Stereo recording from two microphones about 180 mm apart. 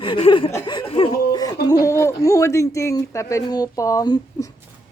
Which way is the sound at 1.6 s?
20° left (ahead or behind).